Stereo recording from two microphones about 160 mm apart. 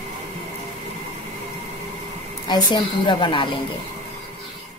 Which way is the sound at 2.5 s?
30° left (ahead or behind).